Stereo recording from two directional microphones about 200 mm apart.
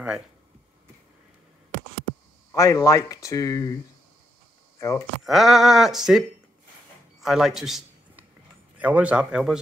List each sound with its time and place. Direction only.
2.5 s speech: 15° left (ahead or behind)
4.7 s speech: 15° left (ahead or behind)
5.2 s speech: centre (ahead or behind)
7.2 s a sound: centre (ahead or behind)
8.7 s speech: 5° right (ahead or behind)